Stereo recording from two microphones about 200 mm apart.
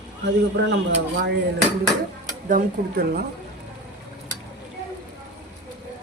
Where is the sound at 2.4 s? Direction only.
45° right (ahead or behind).